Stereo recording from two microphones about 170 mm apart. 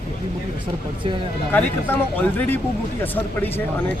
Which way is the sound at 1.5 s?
10° left (ahead or behind).